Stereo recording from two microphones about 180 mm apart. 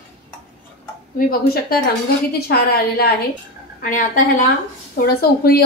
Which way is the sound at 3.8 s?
50° left (ahead or behind).